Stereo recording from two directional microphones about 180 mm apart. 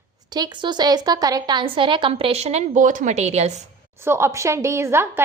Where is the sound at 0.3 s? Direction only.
25° right (ahead or behind).